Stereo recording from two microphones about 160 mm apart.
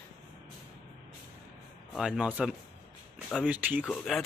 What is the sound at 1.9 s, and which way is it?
A man's voice, 5° right (ahead or behind).